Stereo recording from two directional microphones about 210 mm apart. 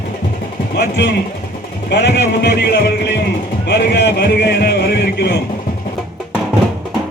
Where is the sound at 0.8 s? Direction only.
55° left (ahead or behind).